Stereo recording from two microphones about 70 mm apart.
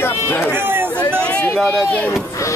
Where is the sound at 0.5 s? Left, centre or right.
Right.